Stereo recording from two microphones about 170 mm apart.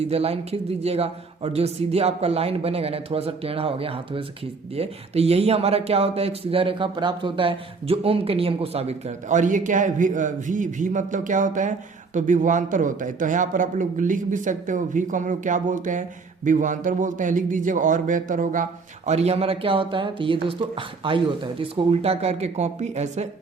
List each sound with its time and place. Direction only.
0.1 s a man's voice: 35° right (ahead or behind)